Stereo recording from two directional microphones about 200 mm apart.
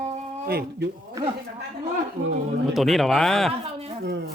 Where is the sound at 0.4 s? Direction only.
50° right (ahead or behind).